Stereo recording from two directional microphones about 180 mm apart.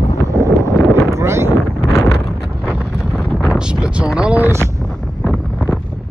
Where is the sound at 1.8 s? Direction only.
20° left (ahead or behind).